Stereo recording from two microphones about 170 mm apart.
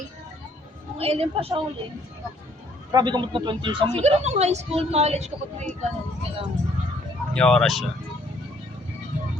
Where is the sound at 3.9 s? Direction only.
40° right (ahead or behind).